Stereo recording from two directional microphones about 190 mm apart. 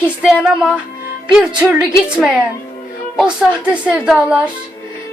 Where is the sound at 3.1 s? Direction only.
5° right (ahead or behind).